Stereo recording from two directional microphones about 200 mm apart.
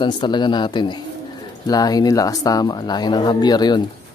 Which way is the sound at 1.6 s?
20° left (ahead or behind).